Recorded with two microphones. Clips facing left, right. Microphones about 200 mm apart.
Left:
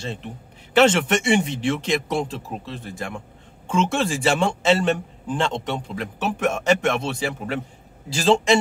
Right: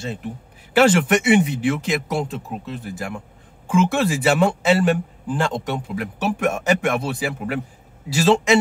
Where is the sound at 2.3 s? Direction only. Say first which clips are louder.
Right 2 dB; 30° left (ahead or behind).